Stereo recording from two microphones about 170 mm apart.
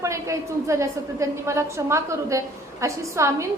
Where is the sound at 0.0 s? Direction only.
15° right (ahead or behind).